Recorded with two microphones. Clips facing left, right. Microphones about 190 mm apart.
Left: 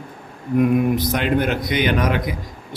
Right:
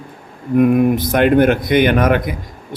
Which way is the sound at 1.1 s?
55° right (ahead or behind).